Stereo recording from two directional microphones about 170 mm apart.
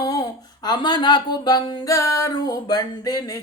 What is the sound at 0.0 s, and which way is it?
Speech, 25° left (ahead or behind).